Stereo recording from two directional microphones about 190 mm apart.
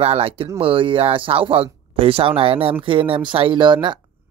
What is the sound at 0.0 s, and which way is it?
Speech, 30° right (ahead or behind).